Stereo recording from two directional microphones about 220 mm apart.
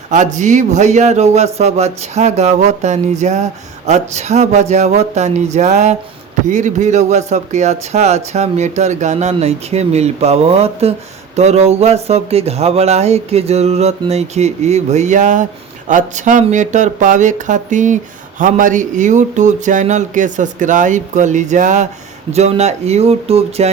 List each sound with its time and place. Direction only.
0.3 s speech: 35° right (ahead or behind)